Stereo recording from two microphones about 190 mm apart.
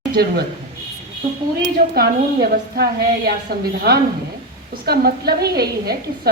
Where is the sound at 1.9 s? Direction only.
55° right (ahead or behind).